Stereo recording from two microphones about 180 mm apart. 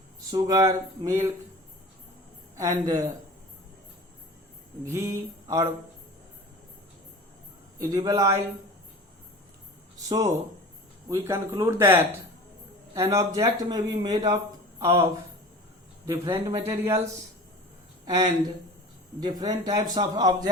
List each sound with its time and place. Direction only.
0.3 s speech: 25° right (ahead or behind)
2.6 s speech: 20° right (ahead or behind)
4.9 s speech: 15° right (ahead or behind)
7.8 s speech: 20° right (ahead or behind)
10.1 s speech: 20° right (ahead or behind)
16.0 s speech: 25° right (ahead or behind)
18.0 s speech: 20° right (ahead or behind)